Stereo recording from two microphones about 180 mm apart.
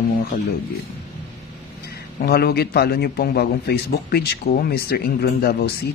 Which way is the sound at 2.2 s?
60° left (ahead or behind).